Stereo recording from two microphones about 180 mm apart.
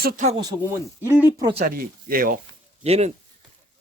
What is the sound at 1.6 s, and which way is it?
Speech, 55° right (ahead or behind).